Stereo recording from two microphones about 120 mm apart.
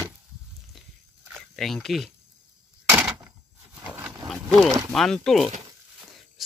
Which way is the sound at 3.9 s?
15° right (ahead or behind).